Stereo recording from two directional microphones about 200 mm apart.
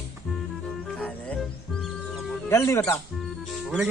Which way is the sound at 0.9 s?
5° left (ahead or behind).